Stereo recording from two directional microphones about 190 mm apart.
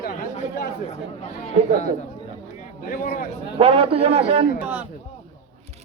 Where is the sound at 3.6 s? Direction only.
30° right (ahead or behind).